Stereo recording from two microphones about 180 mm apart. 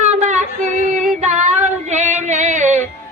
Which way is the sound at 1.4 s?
40° right (ahead or behind).